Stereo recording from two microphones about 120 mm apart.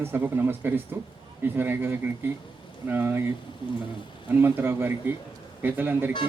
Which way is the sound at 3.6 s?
45° left (ahead or behind).